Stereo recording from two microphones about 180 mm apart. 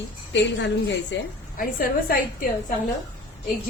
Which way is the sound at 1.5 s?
50° left (ahead or behind).